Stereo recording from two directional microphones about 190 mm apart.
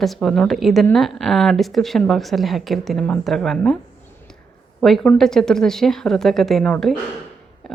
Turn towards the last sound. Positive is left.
turn(degrees=5)  # may be behind; listen again after turning